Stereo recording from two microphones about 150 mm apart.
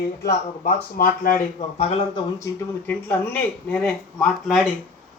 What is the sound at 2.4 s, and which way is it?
Speech, 10° left (ahead or behind).